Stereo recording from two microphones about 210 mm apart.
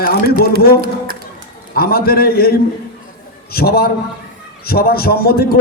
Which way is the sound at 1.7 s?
45° left (ahead or behind).